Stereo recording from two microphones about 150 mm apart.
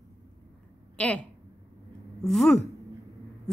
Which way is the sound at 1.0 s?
10° left (ahead or behind).